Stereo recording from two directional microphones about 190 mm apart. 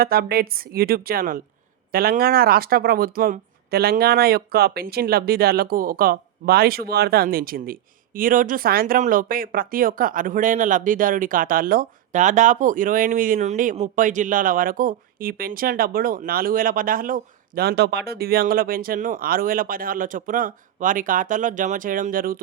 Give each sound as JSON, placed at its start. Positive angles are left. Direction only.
{"t": 0.0, "sound": "speech", "side_deg": -55}